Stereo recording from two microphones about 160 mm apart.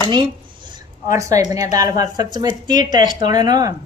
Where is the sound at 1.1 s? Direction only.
20° right (ahead or behind).